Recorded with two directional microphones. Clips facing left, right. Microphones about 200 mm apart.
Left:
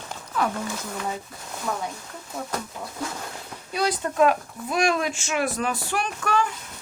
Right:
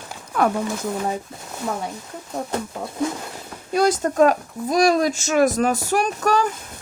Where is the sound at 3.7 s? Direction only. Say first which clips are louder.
Right 5 dB; 45° right (ahead or behind).